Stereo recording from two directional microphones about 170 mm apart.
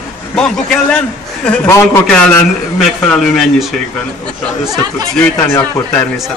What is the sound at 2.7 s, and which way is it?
A man's voice, 5° left (ahead or behind).